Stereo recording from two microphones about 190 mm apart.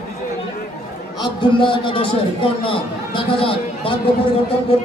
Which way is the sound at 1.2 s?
25° left (ahead or behind).